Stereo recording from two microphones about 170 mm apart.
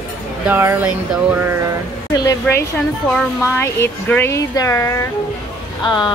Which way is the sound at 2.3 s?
15° left (ahead or behind).